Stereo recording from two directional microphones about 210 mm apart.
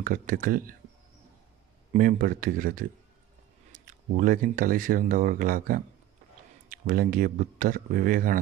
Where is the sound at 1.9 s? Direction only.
40° right (ahead or behind).